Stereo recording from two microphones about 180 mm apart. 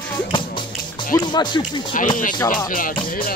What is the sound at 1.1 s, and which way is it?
Speech, 25° left (ahead or behind).